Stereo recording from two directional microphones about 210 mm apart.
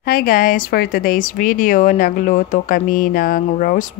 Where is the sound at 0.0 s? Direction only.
45° left (ahead or behind).